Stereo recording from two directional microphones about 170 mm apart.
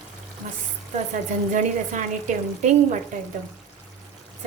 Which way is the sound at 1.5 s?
45° right (ahead or behind).